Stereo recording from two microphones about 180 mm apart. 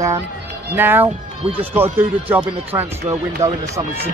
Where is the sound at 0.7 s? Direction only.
10° right (ahead or behind).